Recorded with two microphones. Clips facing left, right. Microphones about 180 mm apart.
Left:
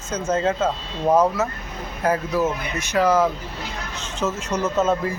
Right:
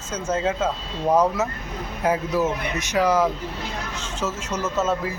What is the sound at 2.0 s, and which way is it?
A man's voice, 15° right (ahead or behind).